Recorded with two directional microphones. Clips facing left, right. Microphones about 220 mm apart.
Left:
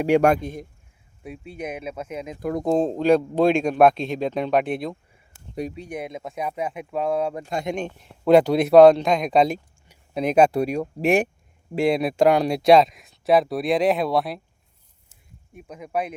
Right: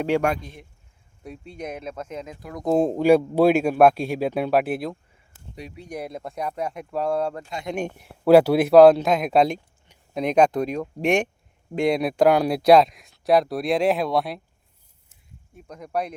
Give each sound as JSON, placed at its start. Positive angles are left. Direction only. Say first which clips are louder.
{"t": 0.2, "sound": "a man's voice", "louder": "left 6 dB", "side_deg": 45}
{"t": 1.2, "sound": "speech", "louder": "left 2 dB", "side_deg": 5}
{"t": 2.6, "sound": "speech", "louder": "right 2 dB", "side_deg": -10}
{"t": 7.8, "sound": "speech", "louder": "right 1 dB", "side_deg": -10}
{"t": 15.5, "sound": "speech", "louder": "left 1 dB", "side_deg": 10}